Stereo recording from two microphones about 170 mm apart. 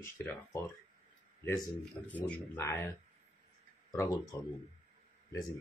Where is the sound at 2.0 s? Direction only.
10° left (ahead or behind).